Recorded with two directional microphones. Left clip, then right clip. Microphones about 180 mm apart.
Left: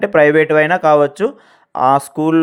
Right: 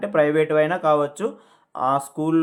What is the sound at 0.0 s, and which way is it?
Speech, 35° left (ahead or behind).